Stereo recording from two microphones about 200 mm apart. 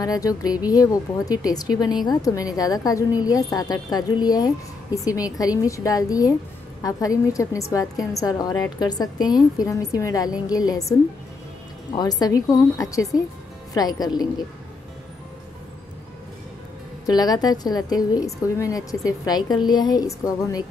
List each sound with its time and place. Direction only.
0.0 s a woman's voice: 20° left (ahead or behind)
17.0 s a woman's voice: 20° left (ahead or behind)